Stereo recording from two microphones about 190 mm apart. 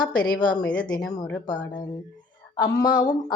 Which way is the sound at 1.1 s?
20° left (ahead or behind).